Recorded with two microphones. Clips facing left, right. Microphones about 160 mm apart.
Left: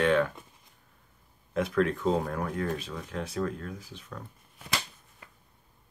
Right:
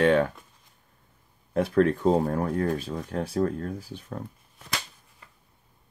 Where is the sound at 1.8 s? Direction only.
40° right (ahead or behind).